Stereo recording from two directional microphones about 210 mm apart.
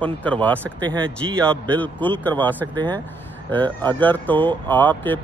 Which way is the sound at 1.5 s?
5° left (ahead or behind).